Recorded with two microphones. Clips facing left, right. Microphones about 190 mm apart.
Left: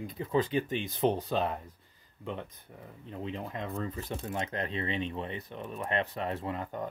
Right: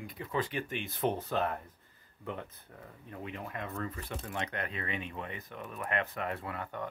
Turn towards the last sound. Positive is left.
turn(degrees=30)  # may be behind; listen again after turning